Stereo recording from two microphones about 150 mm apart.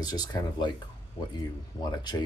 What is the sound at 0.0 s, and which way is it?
Speech, 25° left (ahead or behind).